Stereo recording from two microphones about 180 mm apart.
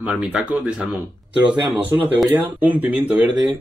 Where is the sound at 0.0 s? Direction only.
5° right (ahead or behind).